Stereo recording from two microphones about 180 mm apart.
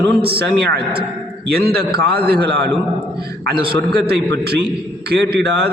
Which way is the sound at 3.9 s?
60° right (ahead or behind).